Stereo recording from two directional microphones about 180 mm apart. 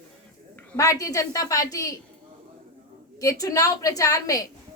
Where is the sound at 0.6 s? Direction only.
15° left (ahead or behind).